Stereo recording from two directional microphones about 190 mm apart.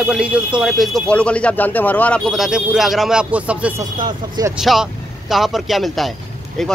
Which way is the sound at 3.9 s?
25° right (ahead or behind).